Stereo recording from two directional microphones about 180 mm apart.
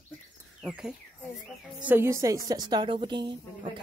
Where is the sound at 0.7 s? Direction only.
5° right (ahead or behind).